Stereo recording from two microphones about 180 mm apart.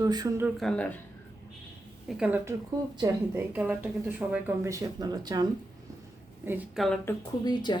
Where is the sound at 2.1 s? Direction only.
5° right (ahead or behind); by 5.5 s 20° right (ahead or behind).